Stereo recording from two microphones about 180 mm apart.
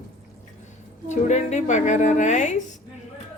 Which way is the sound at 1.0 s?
40° left (ahead or behind).